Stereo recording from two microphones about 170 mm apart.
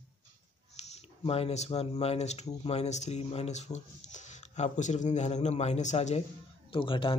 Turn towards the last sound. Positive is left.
turn(degrees=30)  # may be behind; listen again after turning